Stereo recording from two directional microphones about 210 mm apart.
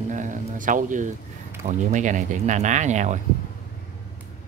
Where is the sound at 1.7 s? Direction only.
35° right (ahead or behind).